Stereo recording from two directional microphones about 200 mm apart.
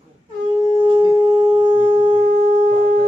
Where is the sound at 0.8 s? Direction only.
20° right (ahead or behind).